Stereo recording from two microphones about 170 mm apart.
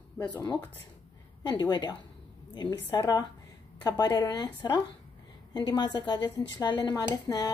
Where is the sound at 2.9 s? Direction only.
20° left (ahead or behind).